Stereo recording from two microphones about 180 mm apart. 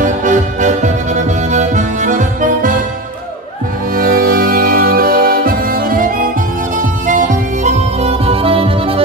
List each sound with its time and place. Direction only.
0.0 s music: 45° right (ahead or behind)
3.9 s music: 55° right (ahead or behind); by 9.0 s 30° right (ahead or behind)